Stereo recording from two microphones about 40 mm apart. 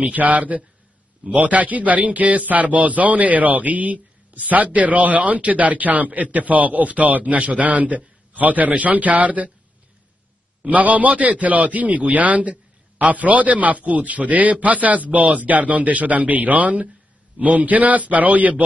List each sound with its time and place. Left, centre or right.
0.0 s a man's voice: right
10.7 s a man's voice: right